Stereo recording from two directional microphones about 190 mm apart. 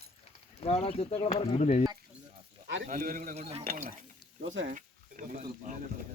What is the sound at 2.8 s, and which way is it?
A man's voice, 45° right (ahead or behind).